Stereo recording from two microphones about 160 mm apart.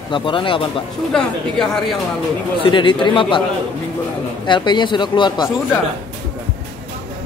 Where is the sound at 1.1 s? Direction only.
5° left (ahead or behind).